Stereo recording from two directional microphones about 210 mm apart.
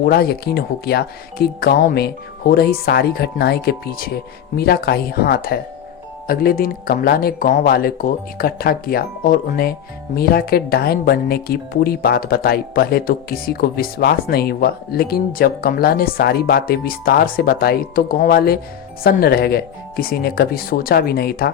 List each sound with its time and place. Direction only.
0.0 s speech: 45° left (ahead or behind)